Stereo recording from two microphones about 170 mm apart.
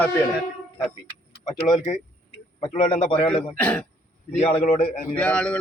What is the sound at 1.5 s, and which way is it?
Speech, 25° left (ahead or behind).